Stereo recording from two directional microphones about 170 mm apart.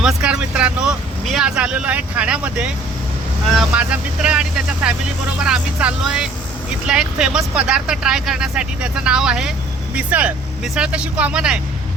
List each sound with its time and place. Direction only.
0.0 s speech: 5° right (ahead or behind)